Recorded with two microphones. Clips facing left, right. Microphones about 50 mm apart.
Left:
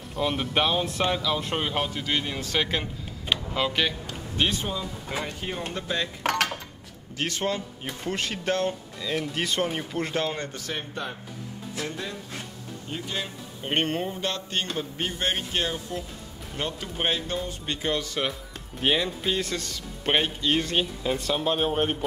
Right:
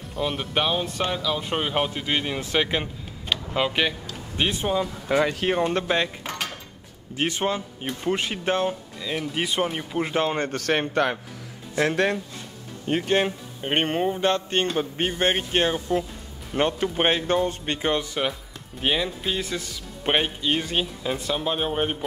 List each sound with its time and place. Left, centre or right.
0.1 s a man's voice: centre
5.0 s speech: right
6.2 s cutlery: left
7.2 s a man's voice: right
10.2 s speech: right
10.5 s speech: right
11.8 s speech: right
12.8 s speech: right
13.6 s speech: centre
18.8 s speech: centre